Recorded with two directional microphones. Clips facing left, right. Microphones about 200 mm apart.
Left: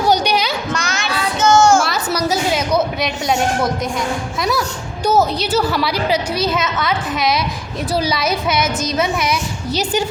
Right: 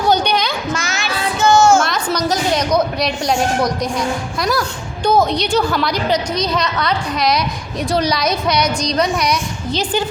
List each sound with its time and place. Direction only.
0.1 s a sound: 10° left (ahead or behind)
0.7 s child singing: centre (ahead or behind)
4.4 s a woman's voice: centre (ahead or behind)